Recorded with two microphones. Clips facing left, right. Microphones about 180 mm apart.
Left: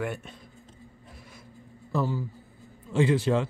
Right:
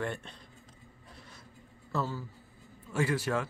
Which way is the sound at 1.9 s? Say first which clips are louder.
Left 6 dB; 15° left (ahead or behind).